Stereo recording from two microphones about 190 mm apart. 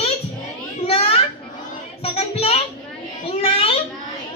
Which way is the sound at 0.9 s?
30° left (ahead or behind).